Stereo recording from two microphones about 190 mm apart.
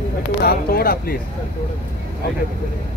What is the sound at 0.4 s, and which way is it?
Speech, 55° left (ahead or behind).